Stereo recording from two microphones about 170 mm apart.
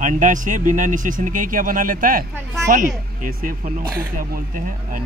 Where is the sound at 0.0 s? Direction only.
50° right (ahead or behind).